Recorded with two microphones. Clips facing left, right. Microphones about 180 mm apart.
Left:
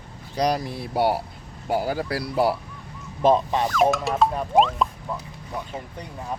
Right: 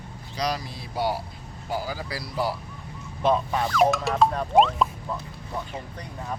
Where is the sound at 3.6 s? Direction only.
Centre (ahead or behind).